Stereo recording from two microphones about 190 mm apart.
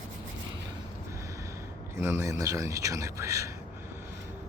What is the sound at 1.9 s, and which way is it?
Speech, 15° right (ahead or behind).